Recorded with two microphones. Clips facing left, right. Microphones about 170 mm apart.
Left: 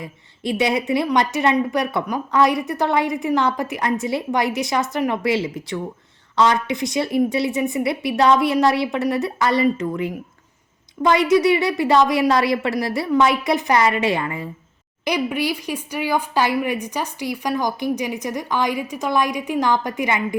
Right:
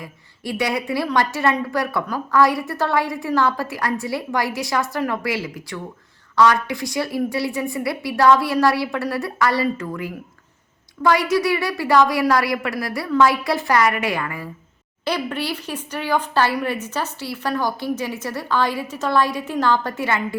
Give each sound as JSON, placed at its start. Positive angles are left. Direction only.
{"t": 0.0, "sound": "a woman's voice", "side_deg": 20}
{"t": 15.0, "sound": "speech", "side_deg": 15}